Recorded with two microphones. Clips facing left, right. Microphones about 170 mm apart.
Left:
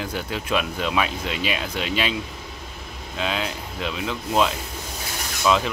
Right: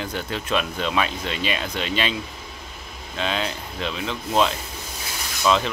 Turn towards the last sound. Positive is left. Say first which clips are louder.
# even
turn(degrees=5)  # may be behind; listen again after turning